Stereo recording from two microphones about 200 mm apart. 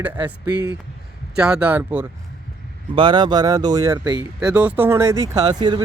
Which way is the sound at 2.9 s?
25° right (ahead or behind).